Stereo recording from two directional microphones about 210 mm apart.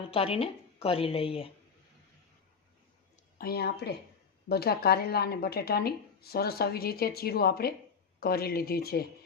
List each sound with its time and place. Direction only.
0.1 s a woman's voice: 25° left (ahead or behind)
3.3 s speech: 45° left (ahead or behind)